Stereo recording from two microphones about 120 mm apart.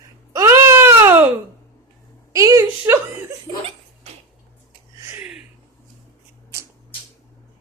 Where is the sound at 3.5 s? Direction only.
50° right (ahead or behind).